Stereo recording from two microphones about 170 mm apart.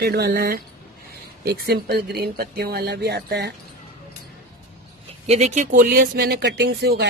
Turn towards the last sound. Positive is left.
turn(degrees=-75)  # may be behind; listen again after turning